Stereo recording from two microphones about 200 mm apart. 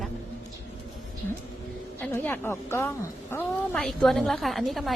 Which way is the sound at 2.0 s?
10° left (ahead or behind).